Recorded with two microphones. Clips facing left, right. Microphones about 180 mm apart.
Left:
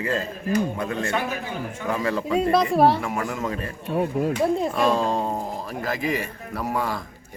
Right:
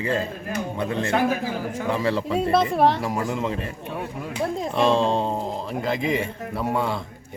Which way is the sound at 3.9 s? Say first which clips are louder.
Left 11 dB; 45° left (ahead or behind).